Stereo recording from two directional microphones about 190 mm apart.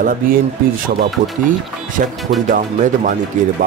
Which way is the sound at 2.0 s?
45° right (ahead or behind).